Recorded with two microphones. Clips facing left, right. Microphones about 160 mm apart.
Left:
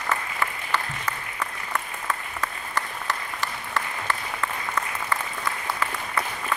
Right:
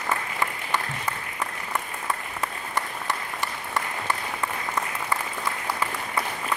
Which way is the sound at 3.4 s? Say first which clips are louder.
Even; 15° right (ahead or behind).